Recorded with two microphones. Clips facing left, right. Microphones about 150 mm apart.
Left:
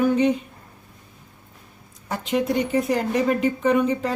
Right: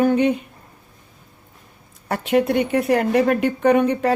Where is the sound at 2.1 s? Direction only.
65° right (ahead or behind).